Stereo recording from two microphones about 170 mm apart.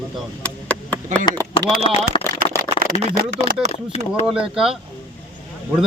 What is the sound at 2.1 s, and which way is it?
Speech, 30° left (ahead or behind).